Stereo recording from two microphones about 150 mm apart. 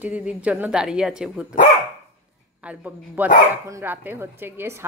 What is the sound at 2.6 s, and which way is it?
A woman's voice, 10° right (ahead or behind).